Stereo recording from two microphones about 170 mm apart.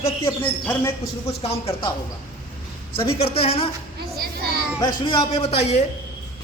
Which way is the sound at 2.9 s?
35° left (ahead or behind).